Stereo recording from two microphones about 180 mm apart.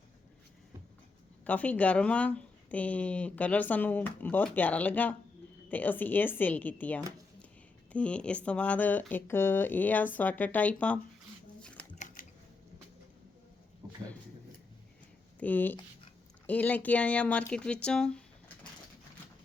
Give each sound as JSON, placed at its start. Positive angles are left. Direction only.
{"t": 1.5, "sound": "speech", "side_deg": 10}
{"t": 11.6, "sound": "typewriter", "side_deg": 5}
{"t": 11.9, "sound": "typing", "side_deg": 45}
{"t": 15.4, "sound": "speech", "side_deg": 10}